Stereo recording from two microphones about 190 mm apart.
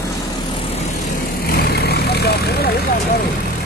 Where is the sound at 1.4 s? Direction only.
55° left (ahead or behind).